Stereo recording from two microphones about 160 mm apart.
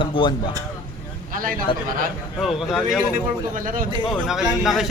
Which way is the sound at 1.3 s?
60° right (ahead or behind).